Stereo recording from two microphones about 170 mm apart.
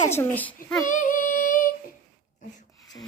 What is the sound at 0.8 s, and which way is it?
Child singing, 50° left (ahead or behind).